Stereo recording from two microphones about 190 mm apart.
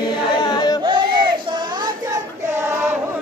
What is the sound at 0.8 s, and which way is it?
Crowd, 25° right (ahead or behind).